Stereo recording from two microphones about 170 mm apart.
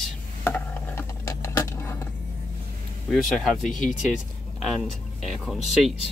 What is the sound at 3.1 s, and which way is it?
Speech, centre (ahead or behind).